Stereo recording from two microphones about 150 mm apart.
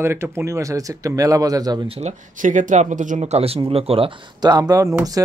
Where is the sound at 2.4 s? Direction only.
55° right (ahead or behind); by 5.2 s 20° right (ahead or behind).